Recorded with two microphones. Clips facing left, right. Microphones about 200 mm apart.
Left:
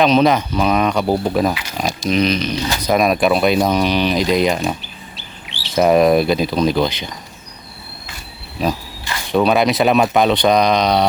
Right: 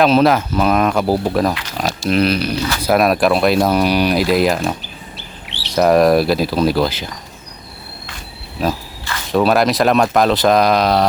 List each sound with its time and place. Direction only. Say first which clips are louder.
0.0 s speech: right 1 dB; 5° right (ahead or behind)
2.6 s speech: right 1 dB; 15° left (ahead or behind)
2.8 s speech: right 1 dB; 5° right (ahead or behind)
5.1 s bird: right 2 dB; 65° right (ahead or behind)
5.7 s speech: right 1 dB; centre (ahead or behind)
8.6 s speech: even; centre (ahead or behind)